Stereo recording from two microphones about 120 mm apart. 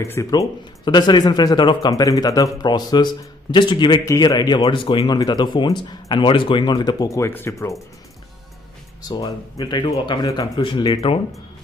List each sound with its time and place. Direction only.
0.0 s speech: 25° left (ahead or behind)
4.0 s speech: 25° left (ahead or behind)
9.0 s speech: 30° left (ahead or behind)